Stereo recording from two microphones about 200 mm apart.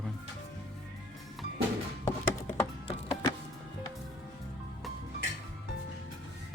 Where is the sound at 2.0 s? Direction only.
15° left (ahead or behind).